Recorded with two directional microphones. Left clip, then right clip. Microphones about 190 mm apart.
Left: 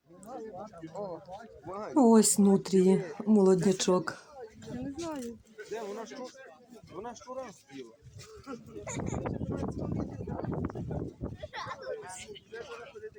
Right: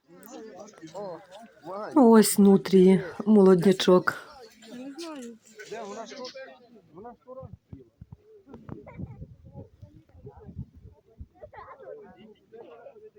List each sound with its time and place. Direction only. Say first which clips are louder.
0.9 s speech: right 2 dB; 20° right (ahead or behind)
1.6 s speech: right 4 dB; 45° right (ahead or behind)
2.0 s speech: right 5 dB; 15° right (ahead or behind)
7.0 s a sound: left 3 dB; 30° right (ahead or behind)